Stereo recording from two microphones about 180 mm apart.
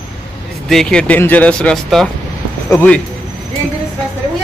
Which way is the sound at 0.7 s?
5° left (ahead or behind).